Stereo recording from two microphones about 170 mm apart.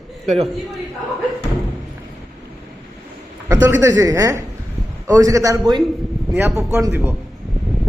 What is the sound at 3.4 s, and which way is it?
A man's voice, 10° right (ahead or behind).